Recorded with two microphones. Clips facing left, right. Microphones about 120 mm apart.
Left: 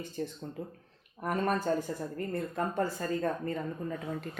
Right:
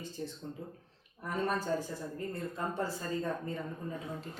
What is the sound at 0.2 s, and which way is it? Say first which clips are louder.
Speech: left 5 dB; 65° left (ahead or behind).